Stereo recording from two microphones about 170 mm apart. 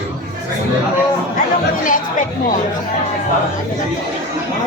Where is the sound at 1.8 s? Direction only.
50° left (ahead or behind).